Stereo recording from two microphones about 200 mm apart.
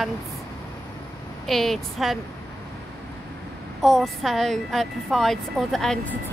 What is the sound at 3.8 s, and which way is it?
A woman's voice, centre (ahead or behind).